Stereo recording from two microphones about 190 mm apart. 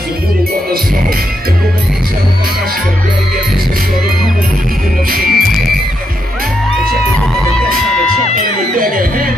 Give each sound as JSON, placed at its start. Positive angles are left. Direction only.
{"t": 5.1, "sound": "music", "side_deg": -50}